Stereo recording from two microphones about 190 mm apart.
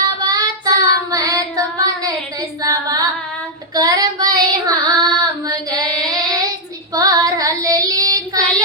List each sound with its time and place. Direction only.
0.0 s child singing: 20° right (ahead or behind)
2.6 s female singing: 20° right (ahead or behind)
3.8 s child singing: 20° right (ahead or behind)